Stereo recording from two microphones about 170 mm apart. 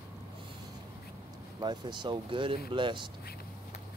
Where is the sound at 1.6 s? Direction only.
25° right (ahead or behind).